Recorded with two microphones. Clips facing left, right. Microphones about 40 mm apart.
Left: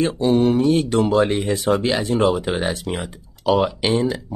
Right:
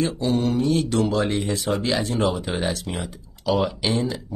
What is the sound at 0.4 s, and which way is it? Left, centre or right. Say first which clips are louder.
Speech: left 4 dB; left.